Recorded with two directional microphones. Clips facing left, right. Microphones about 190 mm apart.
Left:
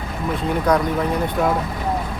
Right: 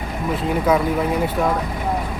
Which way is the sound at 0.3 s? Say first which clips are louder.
Even; 5° right (ahead or behind).